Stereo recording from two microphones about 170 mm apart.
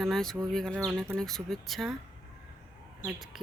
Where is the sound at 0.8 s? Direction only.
10° right (ahead or behind).